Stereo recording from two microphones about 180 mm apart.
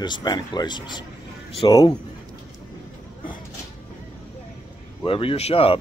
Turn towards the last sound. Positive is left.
turn(degrees=30)  # may be behind; listen again after turning